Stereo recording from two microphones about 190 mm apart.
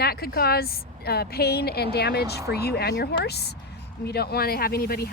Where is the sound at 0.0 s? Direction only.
55° left (ahead or behind).